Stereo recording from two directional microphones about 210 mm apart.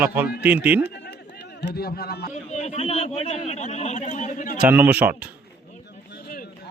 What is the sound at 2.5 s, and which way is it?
A man's voice, 30° left (ahead or behind).